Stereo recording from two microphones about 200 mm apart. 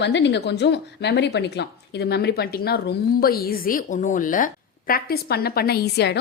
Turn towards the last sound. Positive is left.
turn(degrees=55)  # may be behind; listen again after turning